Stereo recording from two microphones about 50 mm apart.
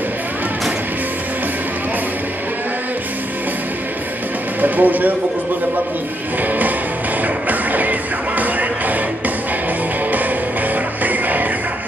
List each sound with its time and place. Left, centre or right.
4.6 s speech: right
7.4 s music: right
10.7 s music: right